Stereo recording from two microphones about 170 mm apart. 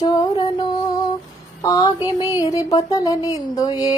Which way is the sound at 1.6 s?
20° left (ahead or behind).